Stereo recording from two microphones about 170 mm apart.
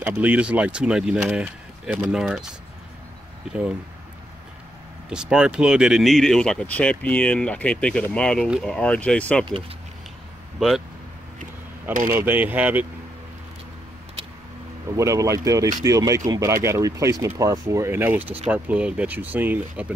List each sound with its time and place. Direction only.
0.0 s speech: 10° right (ahead or behind)
5.1 s speech: 5° right (ahead or behind)
12.1 s speech: 10° right (ahead or behind)
14.9 s speech: 20° right (ahead or behind)